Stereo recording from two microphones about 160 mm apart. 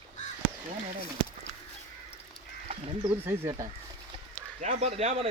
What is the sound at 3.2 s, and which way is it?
Speech, 15° right (ahead or behind).